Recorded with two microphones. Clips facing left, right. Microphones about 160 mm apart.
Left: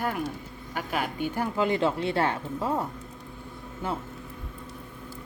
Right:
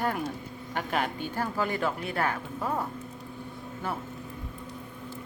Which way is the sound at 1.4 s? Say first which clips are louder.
Left 4 dB; 20° left (ahead or behind).